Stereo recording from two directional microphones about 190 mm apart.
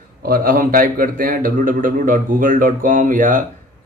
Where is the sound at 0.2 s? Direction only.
50° right (ahead or behind).